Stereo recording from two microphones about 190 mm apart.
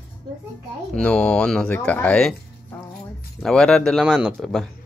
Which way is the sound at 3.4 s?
5° left (ahead or behind).